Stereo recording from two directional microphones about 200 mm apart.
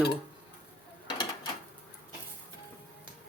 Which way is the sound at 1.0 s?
20° left (ahead or behind).